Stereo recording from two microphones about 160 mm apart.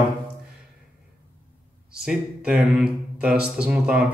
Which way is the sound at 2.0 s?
5° right (ahead or behind).